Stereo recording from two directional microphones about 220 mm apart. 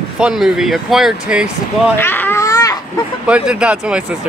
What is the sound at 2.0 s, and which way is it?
Babbling, 10° left (ahead or behind).